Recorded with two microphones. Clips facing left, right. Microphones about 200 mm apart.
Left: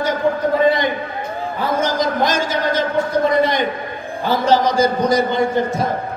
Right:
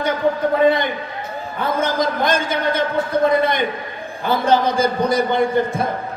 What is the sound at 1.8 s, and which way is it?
A man's voice, 55° right (ahead or behind).